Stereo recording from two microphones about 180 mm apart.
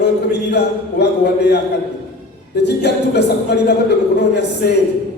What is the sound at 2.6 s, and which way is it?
Speech, 70° left (ahead or behind).